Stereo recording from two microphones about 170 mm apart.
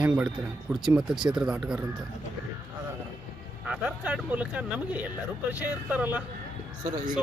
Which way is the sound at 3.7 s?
5° right (ahead or behind).